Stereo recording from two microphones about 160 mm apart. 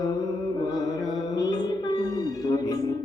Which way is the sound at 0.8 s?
20° left (ahead or behind).